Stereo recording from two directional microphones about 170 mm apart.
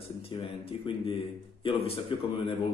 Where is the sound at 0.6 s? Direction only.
30° left (ahead or behind).